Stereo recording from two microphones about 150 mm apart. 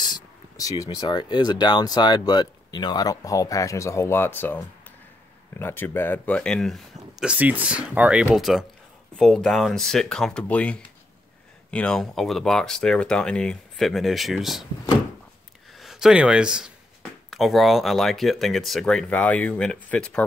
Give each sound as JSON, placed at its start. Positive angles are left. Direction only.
{"t": 0.0, "sound": "speech", "side_deg": 25}
{"t": 15.7, "sound": "speech", "side_deg": 0}